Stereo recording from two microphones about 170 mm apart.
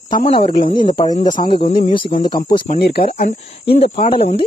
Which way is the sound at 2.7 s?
65° left (ahead or behind).